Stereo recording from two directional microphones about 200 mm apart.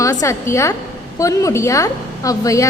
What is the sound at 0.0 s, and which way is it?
A woman's voice, 15° left (ahead or behind).